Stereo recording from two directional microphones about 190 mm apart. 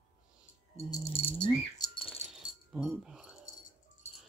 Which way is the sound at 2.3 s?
5° right (ahead or behind).